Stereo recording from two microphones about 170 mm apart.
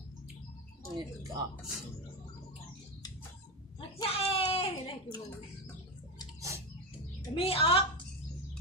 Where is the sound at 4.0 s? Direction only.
35° left (ahead or behind).